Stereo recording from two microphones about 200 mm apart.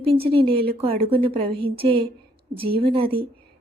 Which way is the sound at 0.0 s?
30° right (ahead or behind).